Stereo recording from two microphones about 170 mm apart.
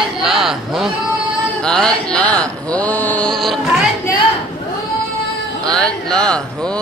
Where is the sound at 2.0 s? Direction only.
5° left (ahead or behind).